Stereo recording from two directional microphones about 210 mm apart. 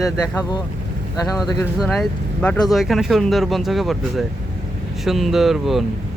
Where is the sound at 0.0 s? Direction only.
15° left (ahead or behind).